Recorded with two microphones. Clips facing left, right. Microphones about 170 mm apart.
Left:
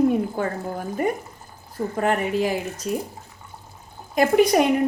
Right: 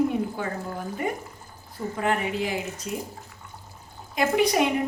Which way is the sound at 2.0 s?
45° left (ahead or behind).